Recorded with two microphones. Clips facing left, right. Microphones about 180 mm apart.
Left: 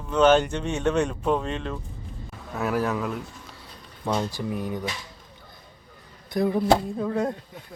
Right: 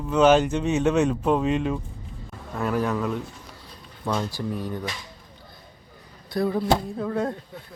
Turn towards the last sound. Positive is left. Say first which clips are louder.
# left 1 dB
turn(degrees=15)  # may be behind; listen again after turning